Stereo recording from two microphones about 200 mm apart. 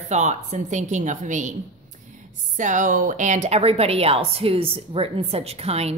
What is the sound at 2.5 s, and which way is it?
A woman's voice, 40° right (ahead or behind).